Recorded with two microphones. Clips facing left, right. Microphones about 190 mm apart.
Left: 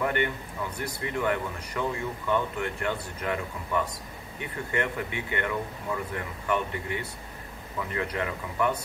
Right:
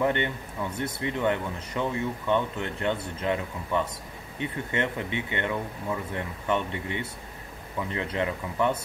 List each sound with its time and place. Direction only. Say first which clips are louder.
0.0 s speech: right 2 dB; 25° right (ahead or behind)